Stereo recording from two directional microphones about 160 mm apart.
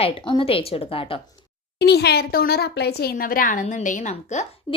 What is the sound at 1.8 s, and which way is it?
A woman's voice, 90° left.